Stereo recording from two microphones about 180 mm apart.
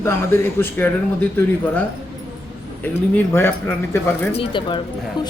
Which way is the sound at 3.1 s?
10° left (ahead or behind).